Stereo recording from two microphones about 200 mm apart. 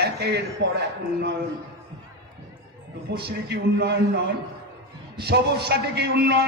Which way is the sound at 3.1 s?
55° right (ahead or behind).